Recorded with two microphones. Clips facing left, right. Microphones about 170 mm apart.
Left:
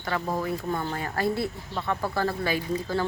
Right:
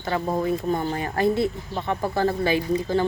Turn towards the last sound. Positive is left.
turn(degrees=-20)  # may be behind; listen again after turning